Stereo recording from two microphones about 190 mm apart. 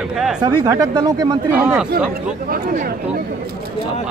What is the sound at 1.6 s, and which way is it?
Speech, 10° right (ahead or behind).